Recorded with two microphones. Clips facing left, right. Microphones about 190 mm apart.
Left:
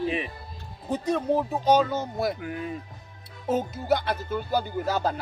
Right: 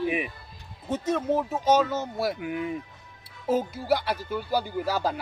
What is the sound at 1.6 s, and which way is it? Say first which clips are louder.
Speech: left 1 dB; 5° right (ahead or behind).